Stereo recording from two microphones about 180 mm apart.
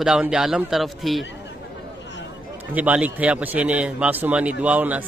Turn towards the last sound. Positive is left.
turn(degrees=-10)  # may be behind; listen again after turning